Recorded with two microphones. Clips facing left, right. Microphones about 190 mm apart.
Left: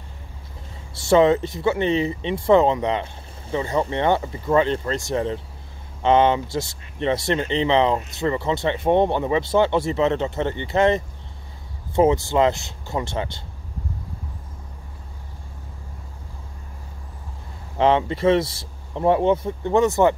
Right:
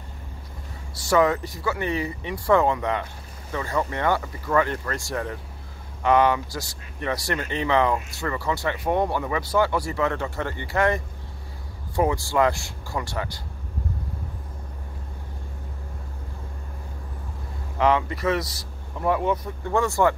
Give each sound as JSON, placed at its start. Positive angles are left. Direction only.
{"t": 0.9, "sound": "speech", "side_deg": 25}
{"t": 17.7, "sound": "speech", "side_deg": 25}